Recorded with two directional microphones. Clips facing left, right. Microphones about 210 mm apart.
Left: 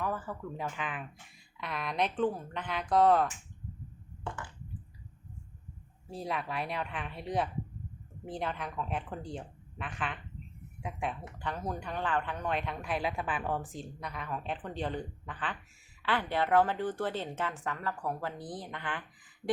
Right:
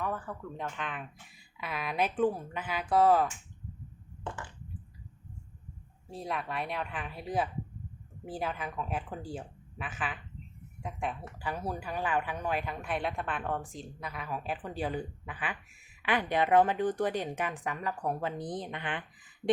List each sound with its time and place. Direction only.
0.0 s speech: centre (ahead or behind)
6.1 s speech: centre (ahead or behind); by 19.0 s 20° right (ahead or behind)